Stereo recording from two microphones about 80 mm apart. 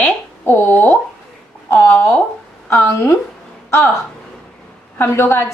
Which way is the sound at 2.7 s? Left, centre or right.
Left.